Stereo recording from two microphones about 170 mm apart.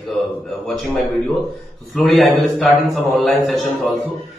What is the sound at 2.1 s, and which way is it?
A man's voice, centre (ahead or behind).